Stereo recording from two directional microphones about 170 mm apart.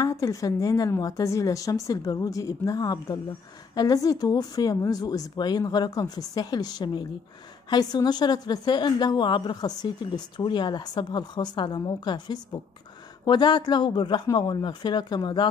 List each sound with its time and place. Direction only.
0.0 s a woman's voice: 20° left (ahead or behind)